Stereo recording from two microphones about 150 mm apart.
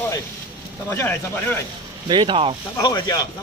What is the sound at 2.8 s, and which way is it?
Speech, 25° left (ahead or behind).